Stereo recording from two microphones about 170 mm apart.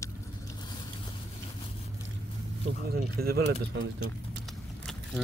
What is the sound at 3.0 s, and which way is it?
Speech, 65° right (ahead or behind).